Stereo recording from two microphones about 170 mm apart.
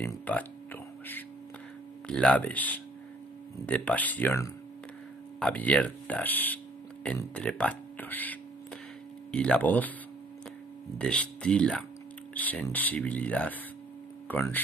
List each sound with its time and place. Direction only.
0.0 s speech: 10° left (ahead or behind)
2.0 s speech: 5° left (ahead or behind)
11.0 s speech: 5° left (ahead or behind)